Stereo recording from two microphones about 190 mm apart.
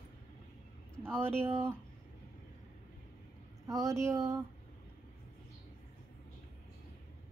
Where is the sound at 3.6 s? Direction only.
15° right (ahead or behind).